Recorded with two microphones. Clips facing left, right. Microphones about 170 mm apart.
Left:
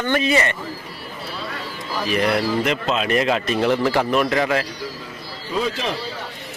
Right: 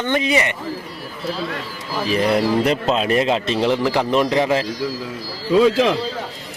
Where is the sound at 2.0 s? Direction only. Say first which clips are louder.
Right 3 dB; 30° right (ahead or behind).